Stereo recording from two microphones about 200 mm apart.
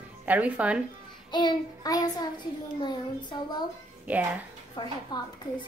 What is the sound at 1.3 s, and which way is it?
Child singing, 20° left (ahead or behind).